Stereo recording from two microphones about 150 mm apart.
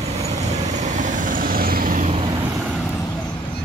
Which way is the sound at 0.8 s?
55° right (ahead or behind).